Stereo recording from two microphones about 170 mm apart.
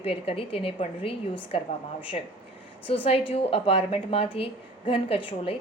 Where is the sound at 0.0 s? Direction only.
35° left (ahead or behind).